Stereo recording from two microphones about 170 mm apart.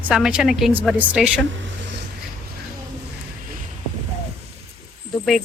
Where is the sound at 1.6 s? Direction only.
90° right.